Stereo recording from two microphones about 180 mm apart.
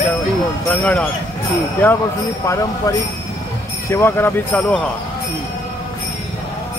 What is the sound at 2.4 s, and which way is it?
Speech, 15° left (ahead or behind).